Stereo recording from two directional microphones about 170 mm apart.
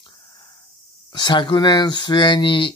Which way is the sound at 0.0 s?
30° left (ahead or behind).